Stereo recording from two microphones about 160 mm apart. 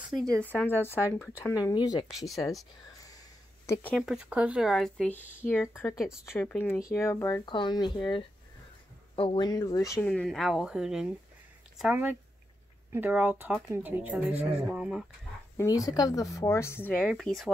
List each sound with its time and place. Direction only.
0.2 s speech: 5° left (ahead or behind); by 2.0 s 25° left (ahead or behind)
2.0 s speech: centre (ahead or behind)
3.6 s speech: 20° left (ahead or behind)
3.9 s speech: 5° right (ahead or behind); by 7.4 s 20° left (ahead or behind)
7.4 s speech: 30° left (ahead or behind)
9.1 s speech: 35° left (ahead or behind); by 10.1 s 20° left (ahead or behind)
10.1 s speech: centre (ahead or behind)
15.5 s speech: 20° left (ahead or behind); by 17.5 s centre (ahead or behind)